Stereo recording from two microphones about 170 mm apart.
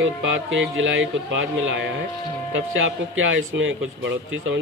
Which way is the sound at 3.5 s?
90° right.